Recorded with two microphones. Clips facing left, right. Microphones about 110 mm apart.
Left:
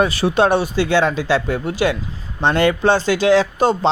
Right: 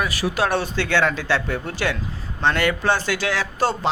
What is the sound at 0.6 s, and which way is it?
Speech, 15° left (ahead or behind).